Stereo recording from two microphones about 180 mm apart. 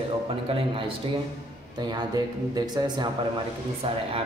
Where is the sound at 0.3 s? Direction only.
30° right (ahead or behind).